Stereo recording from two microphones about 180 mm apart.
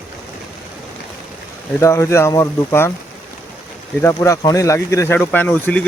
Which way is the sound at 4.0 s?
15° left (ahead or behind).